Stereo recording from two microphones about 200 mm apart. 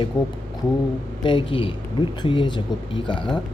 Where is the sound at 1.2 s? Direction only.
25° left (ahead or behind).